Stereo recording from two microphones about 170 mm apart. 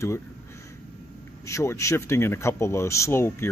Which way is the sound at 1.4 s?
15° left (ahead or behind).